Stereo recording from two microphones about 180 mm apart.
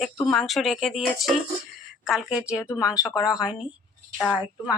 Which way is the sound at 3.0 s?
20° left (ahead or behind).